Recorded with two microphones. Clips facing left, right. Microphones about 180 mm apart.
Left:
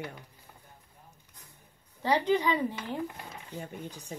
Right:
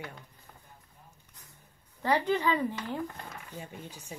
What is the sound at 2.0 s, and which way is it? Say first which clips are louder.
Speech: left 1 dB; 15° left (ahead or behind).